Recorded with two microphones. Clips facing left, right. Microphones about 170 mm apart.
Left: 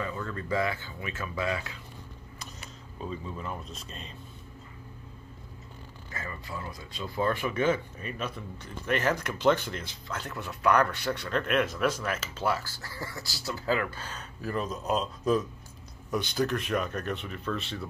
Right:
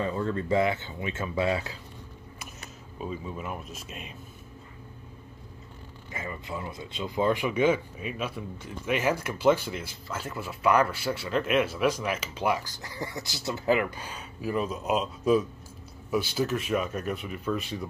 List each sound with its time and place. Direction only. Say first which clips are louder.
0.0 s speech: right 6 dB; 30° right (ahead or behind)
3.0 s speech: right 2 dB; 10° right (ahead or behind)
6.1 s speech: right 3 dB; 20° right (ahead or behind)